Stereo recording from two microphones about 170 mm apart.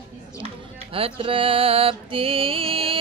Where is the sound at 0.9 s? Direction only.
35° right (ahead or behind).